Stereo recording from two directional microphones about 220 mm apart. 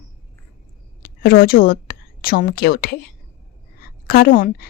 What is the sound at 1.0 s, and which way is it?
A woman's voice, 40° left (ahead or behind).